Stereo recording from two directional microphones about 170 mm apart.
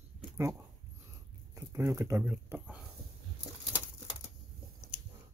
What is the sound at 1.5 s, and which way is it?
Speech, 15° right (ahead or behind).